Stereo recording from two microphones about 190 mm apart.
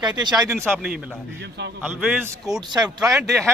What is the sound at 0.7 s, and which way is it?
A man's voice, 5° right (ahead or behind).